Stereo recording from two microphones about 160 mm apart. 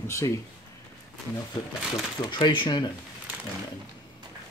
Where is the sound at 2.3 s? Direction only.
30° left (ahead or behind).